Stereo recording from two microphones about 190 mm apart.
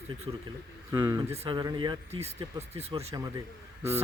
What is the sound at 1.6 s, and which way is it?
Speech, 20° right (ahead or behind).